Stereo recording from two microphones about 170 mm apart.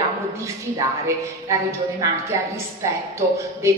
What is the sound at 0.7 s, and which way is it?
A woman's voice, 20° right (ahead or behind).